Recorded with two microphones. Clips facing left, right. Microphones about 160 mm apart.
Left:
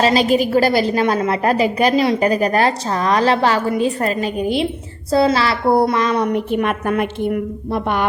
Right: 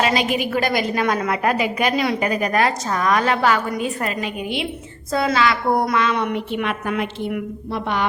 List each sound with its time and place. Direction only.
0.0 s a woman's voice: 35° left (ahead or behind); by 8.0 s 50° left (ahead or behind)